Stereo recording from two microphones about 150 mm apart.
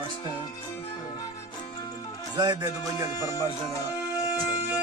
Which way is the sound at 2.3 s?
25° right (ahead or behind).